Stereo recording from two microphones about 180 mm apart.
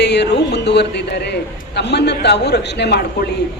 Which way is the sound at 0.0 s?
70° left (ahead or behind).